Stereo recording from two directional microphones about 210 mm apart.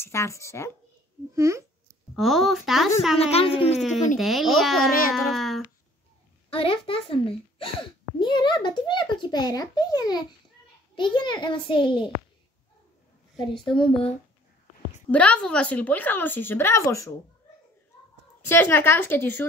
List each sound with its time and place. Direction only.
0.0 s a woman's voice: 15° left (ahead or behind)
1.3 s a child's voice: 15° right (ahead or behind)
2.1 s a woman's voice: centre (ahead or behind)
3.2 s a child's voice: 30° left (ahead or behind)
4.2 s a woman's voice: centre (ahead or behind)
6.5 s a child's voice: 25° left (ahead or behind)
13.7 s a child's voice: 25° left (ahead or behind)
15.0 s a woman's voice: 5° left (ahead or behind)
18.5 s a woman's voice: 10° left (ahead or behind)